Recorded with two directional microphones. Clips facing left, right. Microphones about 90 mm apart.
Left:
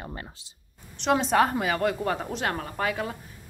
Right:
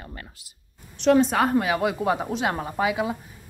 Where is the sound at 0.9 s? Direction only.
Centre (ahead or behind).